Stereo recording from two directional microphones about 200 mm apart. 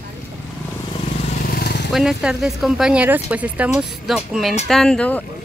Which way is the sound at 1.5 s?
55° left (ahead or behind).